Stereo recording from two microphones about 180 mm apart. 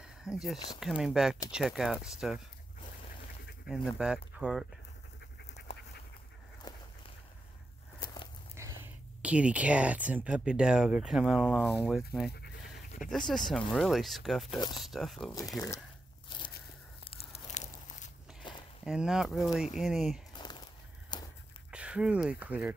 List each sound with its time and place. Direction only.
0.0 s a sound: 5° right (ahead or behind)
0.7 s speech: 5° right (ahead or behind)
3.6 s speech: centre (ahead or behind)
5.7 s duck: 35° left (ahead or behind)
6.7 s walk: 20° left (ahead or behind)
8.0 s walk: 25° left (ahead or behind)
8.5 s speech: 15° right (ahead or behind)
11.6 s speech: 10° left (ahead or behind)
13.1 s speech: centre (ahead or behind)
17.0 s tearing: 35° left (ahead or behind)
18.4 s a sound: 25° left (ahead or behind)
18.9 s speech: 5° right (ahead or behind)
20.3 s a sound: 25° left (ahead or behind)
21.6 s speech: 5° right (ahead or behind)